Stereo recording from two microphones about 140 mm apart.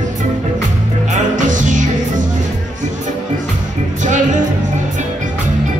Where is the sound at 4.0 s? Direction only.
60° right (ahead or behind).